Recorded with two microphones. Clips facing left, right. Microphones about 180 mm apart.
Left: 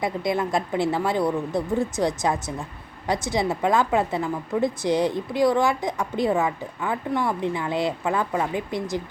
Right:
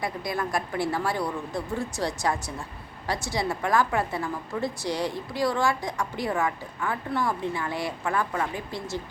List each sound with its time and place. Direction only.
0.0 s a woman's voice: 20° left (ahead or behind)